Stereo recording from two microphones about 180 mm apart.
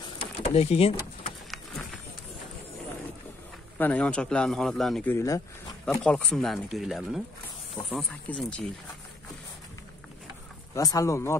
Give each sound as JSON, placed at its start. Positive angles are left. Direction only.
{"t": 0.2, "sound": "a sound", "side_deg": 35}
{"t": 3.7, "sound": "speech", "side_deg": 10}
{"t": 5.1, "sound": "speech", "side_deg": 20}
{"t": 6.0, "sound": "speech", "side_deg": 0}
{"t": 10.7, "sound": "speech", "side_deg": 20}